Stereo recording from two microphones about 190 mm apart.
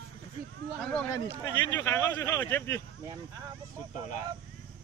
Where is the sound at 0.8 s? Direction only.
5° left (ahead or behind).